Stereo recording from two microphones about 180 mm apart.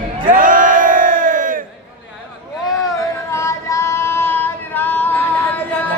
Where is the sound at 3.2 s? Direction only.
15° left (ahead or behind).